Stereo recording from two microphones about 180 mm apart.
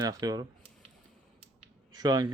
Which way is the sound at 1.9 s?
20° right (ahead or behind).